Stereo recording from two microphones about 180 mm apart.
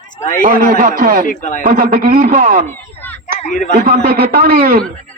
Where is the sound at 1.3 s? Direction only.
45° left (ahead or behind).